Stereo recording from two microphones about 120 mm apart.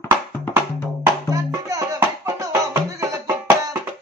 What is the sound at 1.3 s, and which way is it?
Music, 30° right (ahead or behind).